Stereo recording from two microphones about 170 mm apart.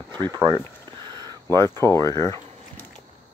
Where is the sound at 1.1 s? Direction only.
25° right (ahead or behind).